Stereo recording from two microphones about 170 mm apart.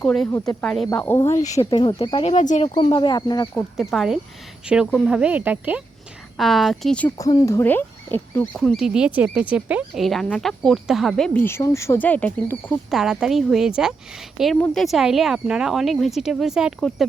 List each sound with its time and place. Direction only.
0.0 s a woman's voice: 5° left (ahead or behind); by 2.3 s 30° left (ahead or behind)
2.3 s speech: 45° left (ahead or behind)
2.7 s speech: 30° left (ahead or behind)
3.5 s a woman's voice: centre (ahead or behind)
6.3 s a woman's voice: centre (ahead or behind)
7.2 s a woman's voice: 20° left (ahead or behind); by 11.3 s centre (ahead or behind)
11.3 s speech: 15° left (ahead or behind)
12.9 s a woman's voice: centre (ahead or behind)